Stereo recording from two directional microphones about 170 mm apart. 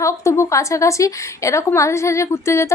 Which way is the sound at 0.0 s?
15° left (ahead or behind).